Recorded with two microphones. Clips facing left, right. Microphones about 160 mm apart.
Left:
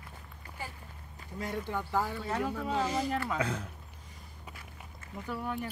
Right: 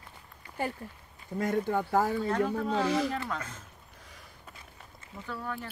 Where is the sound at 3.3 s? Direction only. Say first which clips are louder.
Left 8 dB; 70° left (ahead or behind).